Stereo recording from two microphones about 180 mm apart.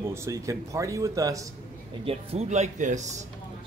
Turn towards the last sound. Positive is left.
turn(degrees=-40)  # may be behind; listen again after turning